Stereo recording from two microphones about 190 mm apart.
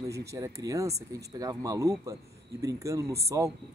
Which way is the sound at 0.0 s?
15° right (ahead or behind).